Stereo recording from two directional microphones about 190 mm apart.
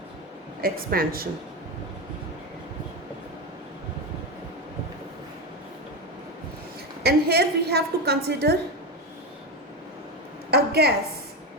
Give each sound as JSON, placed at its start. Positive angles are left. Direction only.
{"t": 0.6, "sound": "a woman's voice", "side_deg": -50}
{"t": 7.0, "sound": "a woman's voice", "side_deg": -55}
{"t": 10.5, "sound": "a woman's voice", "side_deg": -55}